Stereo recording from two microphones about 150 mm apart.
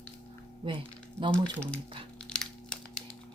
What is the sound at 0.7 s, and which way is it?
Speech, 35° right (ahead or behind).